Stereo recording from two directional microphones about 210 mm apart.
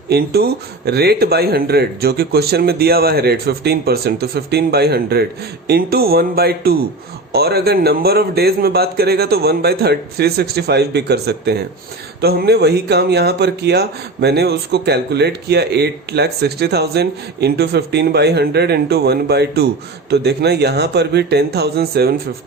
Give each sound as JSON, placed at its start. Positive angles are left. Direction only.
{"t": 0.1, "sound": "speech", "side_deg": -50}